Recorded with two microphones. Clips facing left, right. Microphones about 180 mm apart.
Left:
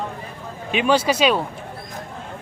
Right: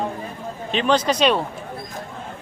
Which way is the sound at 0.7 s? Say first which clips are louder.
Left 1 dB; 10° left (ahead or behind).